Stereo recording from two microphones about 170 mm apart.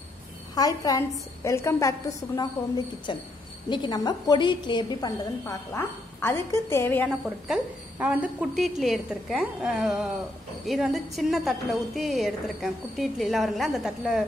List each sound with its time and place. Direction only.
0.6 s a woman's voice: 20° left (ahead or behind)
5.7 s a woman's voice: 15° left (ahead or behind)
7.2 s a woman's voice: 5° right (ahead or behind)